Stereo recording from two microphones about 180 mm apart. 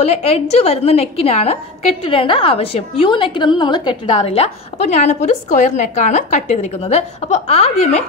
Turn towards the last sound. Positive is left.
turn(degrees=35)  # may be behind; listen again after turning